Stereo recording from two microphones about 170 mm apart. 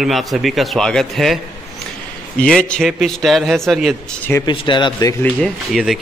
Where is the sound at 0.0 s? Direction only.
Centre (ahead or behind).